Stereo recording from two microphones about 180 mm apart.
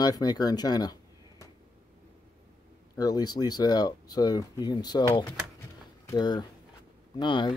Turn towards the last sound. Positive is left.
turn(degrees=25)  # may be behind; listen again after turning